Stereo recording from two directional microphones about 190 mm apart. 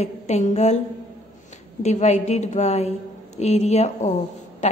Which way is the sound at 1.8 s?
35° left (ahead or behind).